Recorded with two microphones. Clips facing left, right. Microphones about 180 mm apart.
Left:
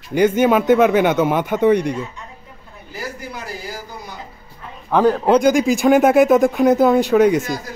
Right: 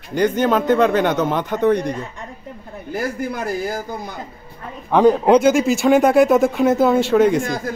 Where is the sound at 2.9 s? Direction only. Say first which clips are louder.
Right 7 dB; 50° right (ahead or behind).